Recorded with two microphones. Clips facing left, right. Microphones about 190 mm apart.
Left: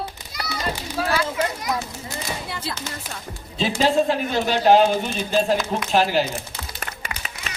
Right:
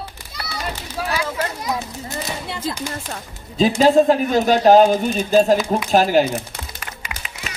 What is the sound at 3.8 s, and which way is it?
Speech, 45° right (ahead or behind).